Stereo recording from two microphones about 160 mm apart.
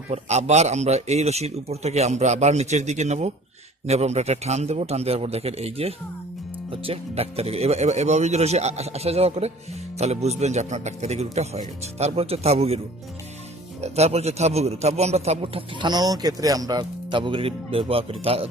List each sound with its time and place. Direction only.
0.1 s a man's voice: 45° right (ahead or behind)
13.8 s a man's voice: 40° right (ahead or behind)